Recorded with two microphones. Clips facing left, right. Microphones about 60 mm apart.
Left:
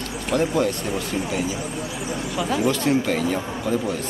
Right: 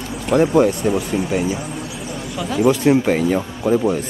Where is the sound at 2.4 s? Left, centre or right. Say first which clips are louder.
Right 3 dB; centre.